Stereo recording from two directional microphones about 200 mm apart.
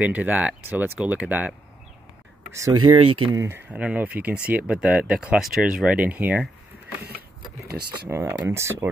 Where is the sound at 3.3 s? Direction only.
10° right (ahead or behind).